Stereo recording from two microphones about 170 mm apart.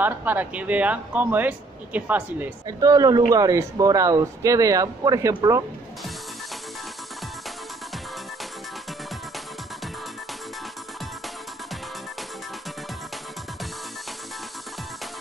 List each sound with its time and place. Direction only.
0.0 s speech: 10° right (ahead or behind)
2.8 s speech: 20° right (ahead or behind)